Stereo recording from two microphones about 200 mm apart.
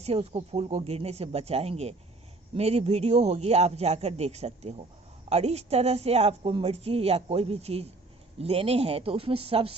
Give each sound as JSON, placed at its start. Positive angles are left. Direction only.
{"t": 0.0, "sound": "a woman's voice", "side_deg": -30}